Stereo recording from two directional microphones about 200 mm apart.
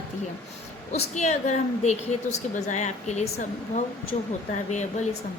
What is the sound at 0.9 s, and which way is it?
A woman's voice, 35° left (ahead or behind).